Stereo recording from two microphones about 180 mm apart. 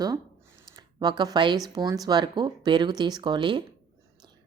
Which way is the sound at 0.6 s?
25° right (ahead or behind).